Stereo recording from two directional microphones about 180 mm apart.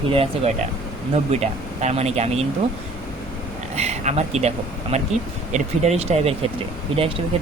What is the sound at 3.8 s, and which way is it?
Speech, 35° right (ahead or behind).